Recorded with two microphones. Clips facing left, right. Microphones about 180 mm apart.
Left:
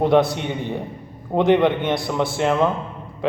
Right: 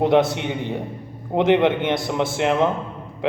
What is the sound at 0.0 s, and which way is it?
Mantra, 20° right (ahead or behind).